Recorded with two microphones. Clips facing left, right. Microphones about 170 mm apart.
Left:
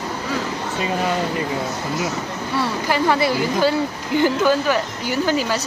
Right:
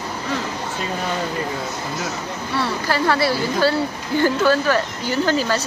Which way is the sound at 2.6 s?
15° left (ahead or behind).